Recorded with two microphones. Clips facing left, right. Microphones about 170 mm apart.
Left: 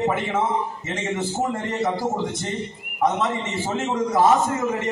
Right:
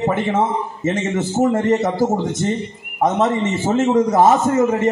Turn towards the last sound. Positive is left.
turn(degrees=-45)  # may be behind; listen again after turning